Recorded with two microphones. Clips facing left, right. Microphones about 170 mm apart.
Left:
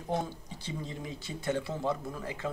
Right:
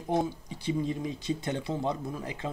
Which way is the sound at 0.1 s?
15° right (ahead or behind).